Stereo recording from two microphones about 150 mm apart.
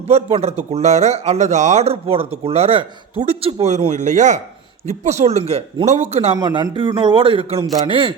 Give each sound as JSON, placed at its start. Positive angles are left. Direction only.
{"t": 0.1, "sound": "speech", "side_deg": -45}
{"t": 6.4, "sound": "a man's voice", "side_deg": -30}